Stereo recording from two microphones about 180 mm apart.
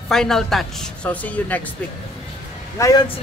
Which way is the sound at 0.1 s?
Centre (ahead or behind).